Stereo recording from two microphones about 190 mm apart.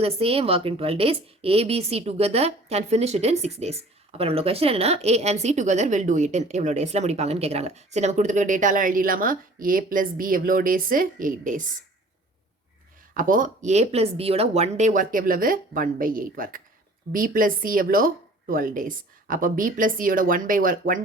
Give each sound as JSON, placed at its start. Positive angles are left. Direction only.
{"t": 0.0, "sound": "speech", "side_deg": -30}
{"t": 13.1, "sound": "speech", "side_deg": -45}